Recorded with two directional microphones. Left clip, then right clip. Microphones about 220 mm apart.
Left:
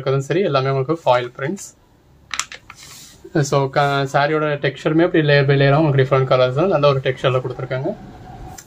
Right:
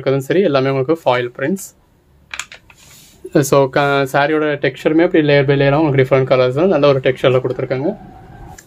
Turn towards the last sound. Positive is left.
turn(degrees=-45)  # may be behind; listen again after turning